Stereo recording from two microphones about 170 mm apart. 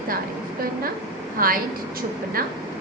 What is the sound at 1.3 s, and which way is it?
Speech, 55° right (ahead or behind).